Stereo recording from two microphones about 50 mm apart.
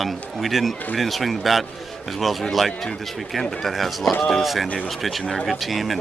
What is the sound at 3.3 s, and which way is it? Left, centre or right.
Speech, centre.